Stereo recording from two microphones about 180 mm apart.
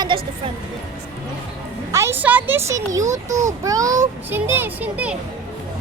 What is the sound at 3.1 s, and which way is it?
Speech, 40° right (ahead or behind).